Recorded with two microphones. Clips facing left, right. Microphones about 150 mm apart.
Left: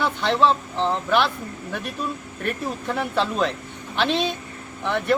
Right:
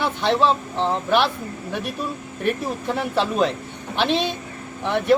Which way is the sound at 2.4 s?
15° right (ahead or behind).